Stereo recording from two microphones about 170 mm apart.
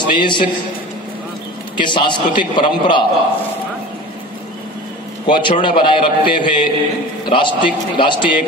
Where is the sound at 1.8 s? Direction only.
25° left (ahead or behind).